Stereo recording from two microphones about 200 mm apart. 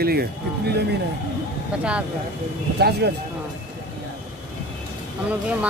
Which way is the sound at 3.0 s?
55° right (ahead or behind).